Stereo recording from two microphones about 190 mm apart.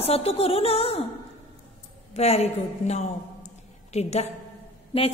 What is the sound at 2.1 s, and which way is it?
A woman's voice, 35° left (ahead or behind).